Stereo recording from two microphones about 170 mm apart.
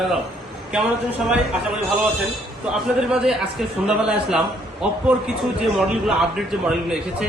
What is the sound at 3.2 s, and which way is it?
A man's voice, 5° right (ahead or behind).